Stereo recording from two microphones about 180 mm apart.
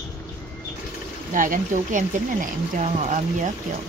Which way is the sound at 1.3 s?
45° right (ahead or behind).